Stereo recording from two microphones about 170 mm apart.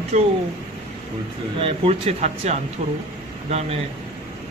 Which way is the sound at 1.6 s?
40° right (ahead or behind).